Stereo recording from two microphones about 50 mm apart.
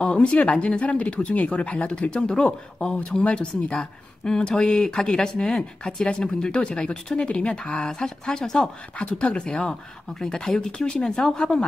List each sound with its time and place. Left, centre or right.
0.0 s speech: centre